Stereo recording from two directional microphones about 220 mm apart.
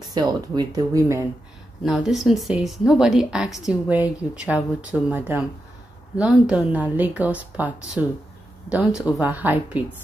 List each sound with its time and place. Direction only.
0.1 s a woman's voice: 20° right (ahead or behind)
1.9 s a woman's voice: centre (ahead or behind)